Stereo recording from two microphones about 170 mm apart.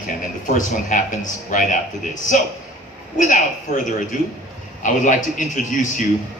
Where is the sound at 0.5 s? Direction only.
45° left (ahead or behind).